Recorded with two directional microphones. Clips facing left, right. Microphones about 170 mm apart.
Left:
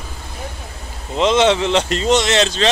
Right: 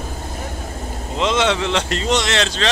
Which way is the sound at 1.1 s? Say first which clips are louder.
Left 4 dB; 20° left (ahead or behind).